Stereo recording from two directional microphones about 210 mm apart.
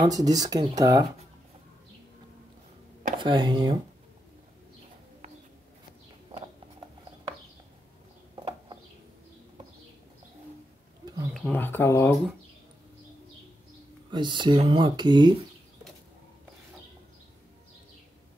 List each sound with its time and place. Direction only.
0.0 s speech: 15° right (ahead or behind)
3.2 s speech: 20° right (ahead or behind)
8.4 s a sound: 25° right (ahead or behind)
11.3 s speech: 5° left (ahead or behind)
14.1 s speech: 20° right (ahead or behind)